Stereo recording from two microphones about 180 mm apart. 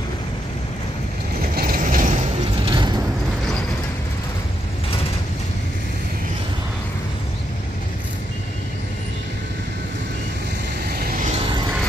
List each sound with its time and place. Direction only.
1.5 s vehicle: 55° right (ahead or behind)
2.6 s a sound: 25° right (ahead or behind)
10.9 s vehicle: 55° right (ahead or behind); by 11.7 s 30° right (ahead or behind)